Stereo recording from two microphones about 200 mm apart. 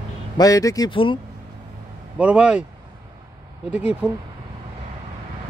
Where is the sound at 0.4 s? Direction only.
15° left (ahead or behind).